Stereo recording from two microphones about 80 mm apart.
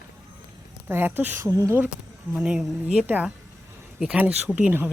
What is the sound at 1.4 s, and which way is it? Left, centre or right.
Speech, right.